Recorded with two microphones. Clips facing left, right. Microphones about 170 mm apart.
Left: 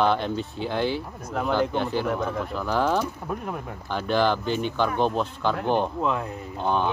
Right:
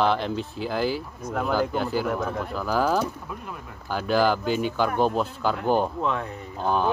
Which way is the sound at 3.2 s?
50° left (ahead or behind).